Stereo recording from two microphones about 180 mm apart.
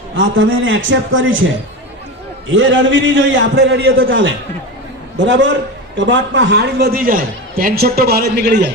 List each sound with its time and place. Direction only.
0.3 s a man's voice: 90° right
2.5 s a man's voice: 90° right; by 8.7 s 65° right (ahead or behind)